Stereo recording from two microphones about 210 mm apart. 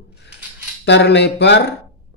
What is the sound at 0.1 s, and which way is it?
Coin, 55° left (ahead or behind).